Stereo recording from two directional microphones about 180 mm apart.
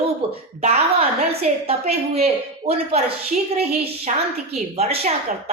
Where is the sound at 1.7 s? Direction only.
35° right (ahead or behind).